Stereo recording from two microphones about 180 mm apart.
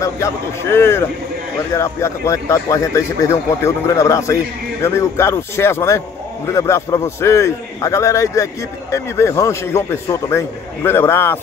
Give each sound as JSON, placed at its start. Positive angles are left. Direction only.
{"t": 0.0, "sound": "a man's voice", "side_deg": 15}